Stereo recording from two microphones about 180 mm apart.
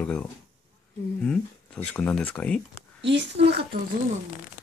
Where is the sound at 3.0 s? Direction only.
80° right.